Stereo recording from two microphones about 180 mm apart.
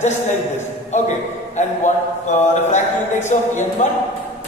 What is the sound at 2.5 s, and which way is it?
A man's voice, 40° left (ahead or behind).